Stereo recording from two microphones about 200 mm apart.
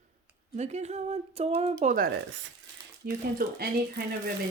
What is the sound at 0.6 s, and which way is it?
Speech, 35° right (ahead or behind).